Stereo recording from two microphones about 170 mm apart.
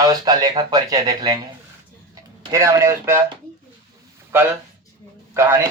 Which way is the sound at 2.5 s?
20° right (ahead or behind).